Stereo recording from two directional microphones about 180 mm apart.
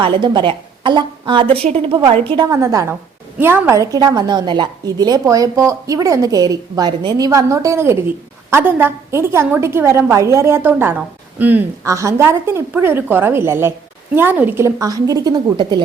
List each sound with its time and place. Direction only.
0.0 s a woman's voice: 25° right (ahead or behind)